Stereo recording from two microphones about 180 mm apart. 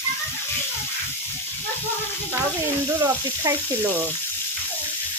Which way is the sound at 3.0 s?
15° right (ahead or behind).